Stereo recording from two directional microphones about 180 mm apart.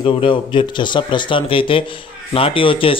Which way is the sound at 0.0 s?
30° left (ahead or behind).